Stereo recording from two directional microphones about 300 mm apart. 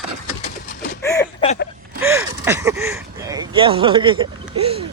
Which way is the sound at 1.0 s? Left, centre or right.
Centre.